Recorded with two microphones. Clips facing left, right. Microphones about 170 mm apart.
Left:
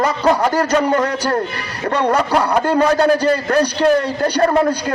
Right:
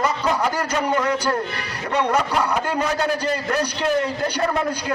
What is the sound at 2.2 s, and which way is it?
A man's voice, 65° left (ahead or behind).